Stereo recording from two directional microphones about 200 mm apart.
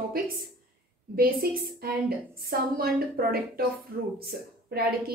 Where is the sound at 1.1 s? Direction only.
50° right (ahead or behind).